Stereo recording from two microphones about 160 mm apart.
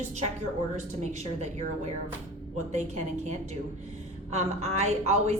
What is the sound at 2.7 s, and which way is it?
A woman's voice, 45° right (ahead or behind).